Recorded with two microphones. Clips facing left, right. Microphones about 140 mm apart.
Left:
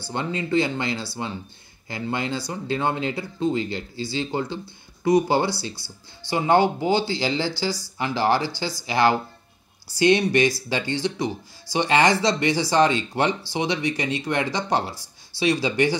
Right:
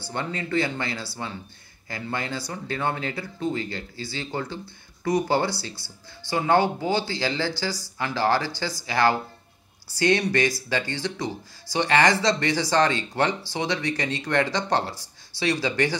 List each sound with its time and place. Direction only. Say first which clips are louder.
0.1 s speech: left 4 dB; 20° left (ahead or behind)